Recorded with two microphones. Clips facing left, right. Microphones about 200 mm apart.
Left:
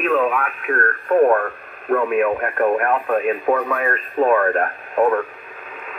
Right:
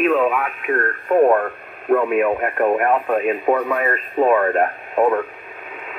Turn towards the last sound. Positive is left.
turn(degrees=-10)  # may be behind; listen again after turning